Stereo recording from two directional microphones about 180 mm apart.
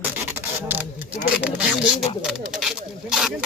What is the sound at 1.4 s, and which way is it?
Speech, 5° right (ahead or behind).